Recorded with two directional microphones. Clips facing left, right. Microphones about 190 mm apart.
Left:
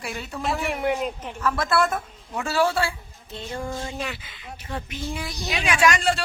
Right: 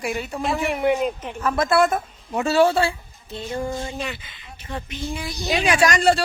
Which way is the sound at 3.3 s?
5° right (ahead or behind).